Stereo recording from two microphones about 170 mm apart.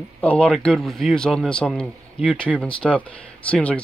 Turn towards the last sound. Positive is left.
turn(degrees=10)  # may be behind; listen again after turning